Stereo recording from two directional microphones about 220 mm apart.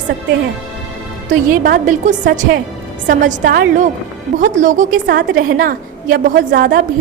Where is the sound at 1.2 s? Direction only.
35° right (ahead or behind).